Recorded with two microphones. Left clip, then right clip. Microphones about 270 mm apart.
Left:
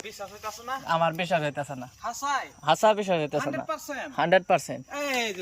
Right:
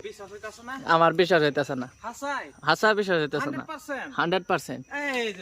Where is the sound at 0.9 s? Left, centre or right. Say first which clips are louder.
Right 5 dB; centre.